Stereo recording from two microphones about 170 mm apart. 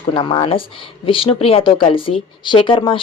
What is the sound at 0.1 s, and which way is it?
A woman's voice, 30° left (ahead or behind).